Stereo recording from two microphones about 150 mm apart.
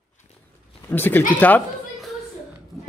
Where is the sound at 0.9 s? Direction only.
15° left (ahead or behind).